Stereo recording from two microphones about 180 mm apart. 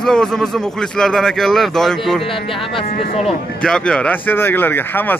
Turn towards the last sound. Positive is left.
turn(degrees=10)  # may be behind; listen again after turning